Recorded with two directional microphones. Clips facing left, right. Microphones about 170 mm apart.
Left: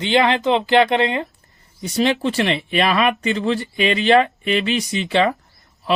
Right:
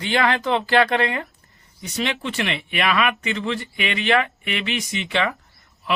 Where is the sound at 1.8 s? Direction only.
35° left (ahead or behind).